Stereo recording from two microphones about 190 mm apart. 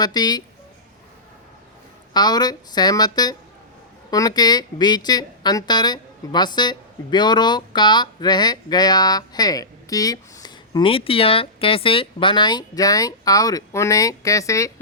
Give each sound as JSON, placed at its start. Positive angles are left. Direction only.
{"t": 0.0, "sound": "a woman's voice", "side_deg": 20}
{"t": 2.1, "sound": "a woman's voice", "side_deg": 20}